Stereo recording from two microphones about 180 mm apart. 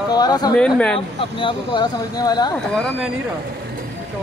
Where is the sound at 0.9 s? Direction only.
25° left (ahead or behind).